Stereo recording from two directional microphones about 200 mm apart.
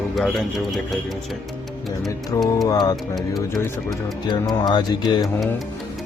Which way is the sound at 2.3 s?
15° left (ahead or behind).